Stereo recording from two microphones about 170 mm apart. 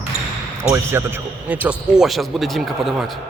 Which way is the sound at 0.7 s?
15° right (ahead or behind).